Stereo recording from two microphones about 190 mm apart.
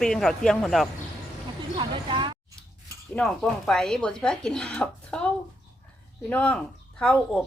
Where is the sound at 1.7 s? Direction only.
25° right (ahead or behind).